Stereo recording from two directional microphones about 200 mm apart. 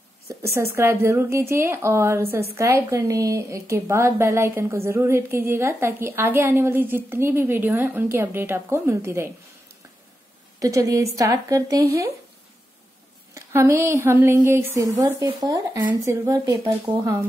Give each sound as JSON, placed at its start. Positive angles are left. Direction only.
{"t": 0.3, "sound": "a woman's voice", "side_deg": -15}
{"t": 10.6, "sound": "a woman's voice", "side_deg": -15}
{"t": 13.3, "sound": "a woman's voice", "side_deg": -15}